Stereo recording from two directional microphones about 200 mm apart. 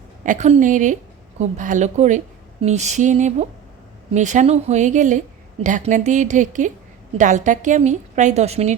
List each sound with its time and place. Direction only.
0.3 s a woman's voice: 35° right (ahead or behind)